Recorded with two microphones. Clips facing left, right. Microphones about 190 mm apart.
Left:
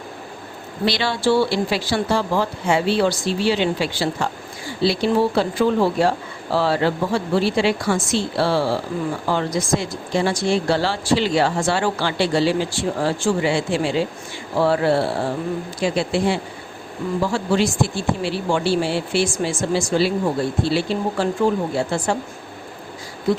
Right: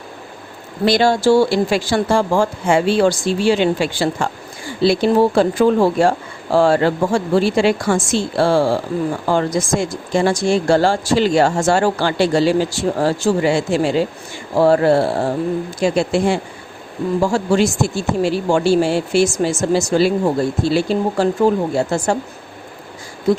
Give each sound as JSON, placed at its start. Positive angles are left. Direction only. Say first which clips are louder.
{"t": 0.9, "sound": "speech", "louder": "right 6 dB", "side_deg": -45}